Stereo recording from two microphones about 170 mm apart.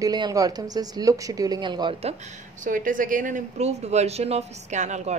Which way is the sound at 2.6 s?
50° right (ahead or behind).